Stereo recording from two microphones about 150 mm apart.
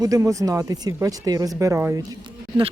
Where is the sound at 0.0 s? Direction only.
20° right (ahead or behind).